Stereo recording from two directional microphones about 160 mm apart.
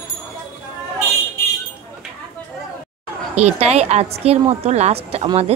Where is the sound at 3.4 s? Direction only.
40° right (ahead or behind).